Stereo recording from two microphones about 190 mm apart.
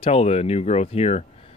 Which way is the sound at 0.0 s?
35° left (ahead or behind).